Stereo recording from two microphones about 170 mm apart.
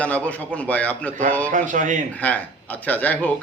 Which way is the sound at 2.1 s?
10° left (ahead or behind).